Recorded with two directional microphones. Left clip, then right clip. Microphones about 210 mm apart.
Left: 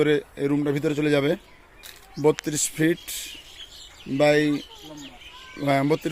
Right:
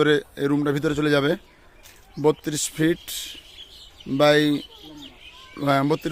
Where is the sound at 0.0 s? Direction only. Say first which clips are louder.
Right 2 dB; 15° right (ahead or behind).